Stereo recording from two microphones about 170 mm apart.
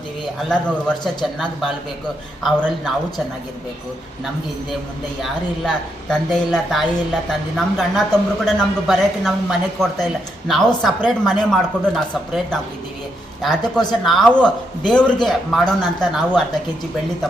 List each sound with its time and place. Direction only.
0.4 s a man's voice: 5° left (ahead or behind)
5.2 s a man's voice: centre (ahead or behind)